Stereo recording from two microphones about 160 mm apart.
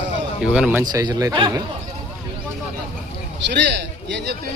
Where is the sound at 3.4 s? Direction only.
90° right.